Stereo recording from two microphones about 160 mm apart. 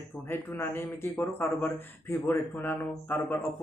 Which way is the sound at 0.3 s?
15° left (ahead or behind).